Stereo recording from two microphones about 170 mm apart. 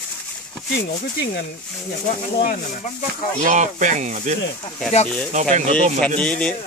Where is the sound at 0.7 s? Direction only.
75° left (ahead or behind).